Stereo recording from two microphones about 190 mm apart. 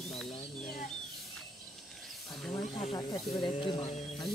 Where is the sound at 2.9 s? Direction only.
20° left (ahead or behind).